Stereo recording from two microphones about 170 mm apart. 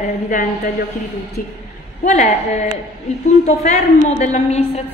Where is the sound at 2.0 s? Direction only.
45° left (ahead or behind).